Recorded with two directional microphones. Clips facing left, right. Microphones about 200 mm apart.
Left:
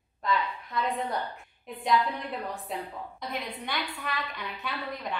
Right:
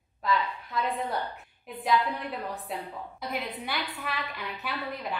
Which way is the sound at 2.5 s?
5° right (ahead or behind).